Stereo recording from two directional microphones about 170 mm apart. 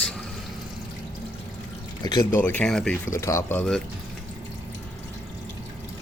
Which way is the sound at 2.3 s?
10° left (ahead or behind).